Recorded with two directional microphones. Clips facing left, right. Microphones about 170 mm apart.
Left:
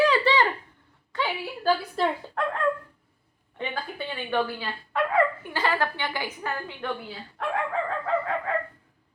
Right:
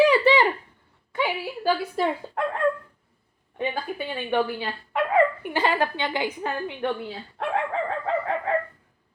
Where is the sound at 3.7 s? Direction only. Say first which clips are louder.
Right 3 dB; 15° right (ahead or behind).